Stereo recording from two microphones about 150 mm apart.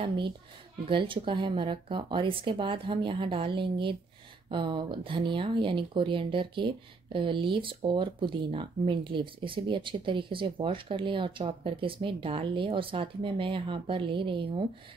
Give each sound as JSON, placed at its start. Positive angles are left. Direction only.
{"t": 0.8, "sound": "speech", "side_deg": -35}